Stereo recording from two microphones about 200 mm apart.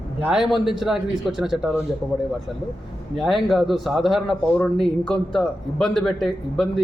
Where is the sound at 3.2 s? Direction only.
Centre (ahead or behind).